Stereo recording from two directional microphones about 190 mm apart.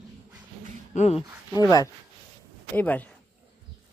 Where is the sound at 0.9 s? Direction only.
35° left (ahead or behind).